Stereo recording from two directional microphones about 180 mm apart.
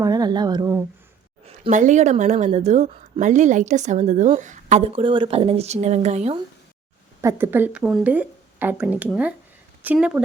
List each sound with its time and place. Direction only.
0.0 s speech: 20° right (ahead or behind)
1.7 s a woman's voice: 40° right (ahead or behind)
7.2 s speech: 15° right (ahead or behind)